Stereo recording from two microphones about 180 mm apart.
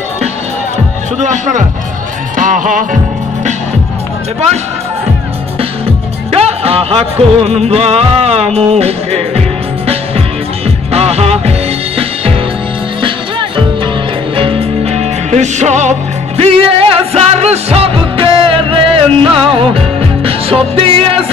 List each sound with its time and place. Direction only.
1.2 s music: 40° right (ahead or behind)
6.3 s music: 35° right (ahead or behind)
10.9 s music: 35° right (ahead or behind)
13.0 s music: 25° right (ahead or behind)